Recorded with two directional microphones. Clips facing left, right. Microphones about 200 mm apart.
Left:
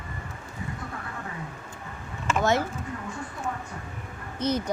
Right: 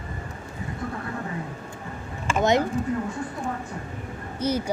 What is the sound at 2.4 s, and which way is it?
Speech, 20° right (ahead or behind).